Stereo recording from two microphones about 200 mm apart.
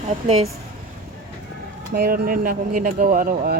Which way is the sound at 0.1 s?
30° right (ahead or behind).